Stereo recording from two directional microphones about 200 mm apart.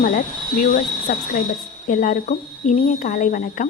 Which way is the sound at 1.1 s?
50° left (ahead or behind).